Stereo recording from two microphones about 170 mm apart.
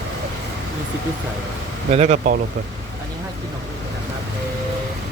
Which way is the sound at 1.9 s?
40° right (ahead or behind).